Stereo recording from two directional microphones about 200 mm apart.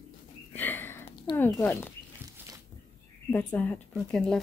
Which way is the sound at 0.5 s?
10° left (ahead or behind).